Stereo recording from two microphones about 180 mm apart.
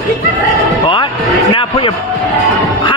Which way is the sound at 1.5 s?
25° left (ahead or behind).